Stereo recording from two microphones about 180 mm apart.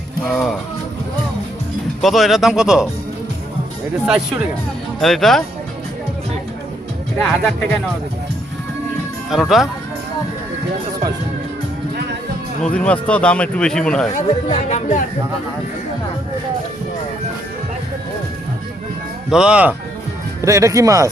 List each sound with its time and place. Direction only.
0.3 s speech: centre (ahead or behind)
2.0 s speech: centre (ahead or behind)
4.9 s speech: centre (ahead or behind)
7.2 s speech: centre (ahead or behind)
9.3 s speech: centre (ahead or behind)
12.6 s a man's voice: 5° left (ahead or behind)
14.5 s speech: 40° left (ahead or behind)
19.3 s speech: 5° right (ahead or behind)
20.4 s speech: 15° right (ahead or behind)